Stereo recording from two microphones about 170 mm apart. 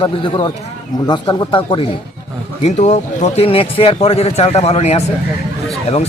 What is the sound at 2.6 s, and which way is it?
A man's voice, 40° left (ahead or behind).